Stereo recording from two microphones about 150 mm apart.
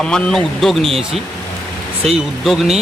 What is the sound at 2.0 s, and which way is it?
Speech, centre (ahead or behind).